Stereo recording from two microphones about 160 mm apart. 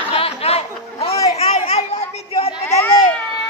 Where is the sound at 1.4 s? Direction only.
40° left (ahead or behind).